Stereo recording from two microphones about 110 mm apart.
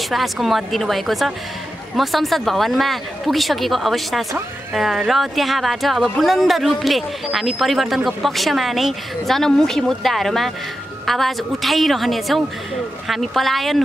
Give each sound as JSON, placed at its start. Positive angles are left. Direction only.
{"t": 0.1, "sound": "speech", "side_deg": 0}